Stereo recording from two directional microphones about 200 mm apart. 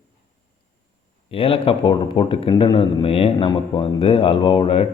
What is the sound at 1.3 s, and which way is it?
Speech, 25° left (ahead or behind).